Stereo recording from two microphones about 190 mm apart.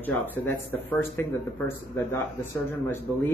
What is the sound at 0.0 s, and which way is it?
Speech, 10° left (ahead or behind).